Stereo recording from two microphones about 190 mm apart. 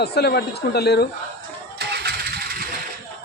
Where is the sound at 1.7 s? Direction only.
60° right (ahead or behind).